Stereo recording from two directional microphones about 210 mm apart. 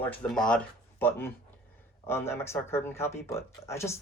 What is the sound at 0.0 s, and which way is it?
Speech, 10° left (ahead or behind).